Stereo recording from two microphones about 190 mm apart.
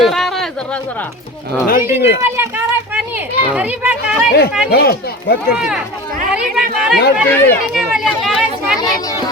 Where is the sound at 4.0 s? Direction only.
55° left (ahead or behind).